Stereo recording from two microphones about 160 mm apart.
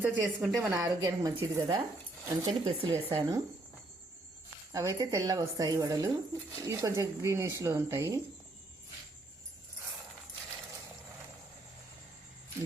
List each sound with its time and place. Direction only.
0.0 s a woman's voice: 10° right (ahead or behind)
2.5 s speech: 35° right (ahead or behind)
2.9 s a woman's voice: 20° right (ahead or behind)
4.7 s a woman's voice: 20° right (ahead or behind)